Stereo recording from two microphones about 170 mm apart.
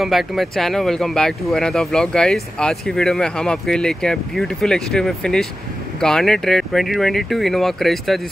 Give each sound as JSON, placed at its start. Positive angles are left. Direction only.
{"t": 0.0, "sound": "speech", "side_deg": 0}